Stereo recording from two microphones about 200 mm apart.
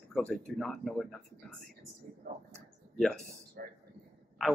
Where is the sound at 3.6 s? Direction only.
45° right (ahead or behind).